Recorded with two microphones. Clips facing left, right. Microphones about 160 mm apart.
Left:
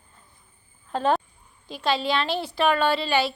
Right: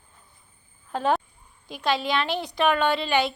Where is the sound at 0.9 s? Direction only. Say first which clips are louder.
Left 1 dB; 15° right (ahead or behind).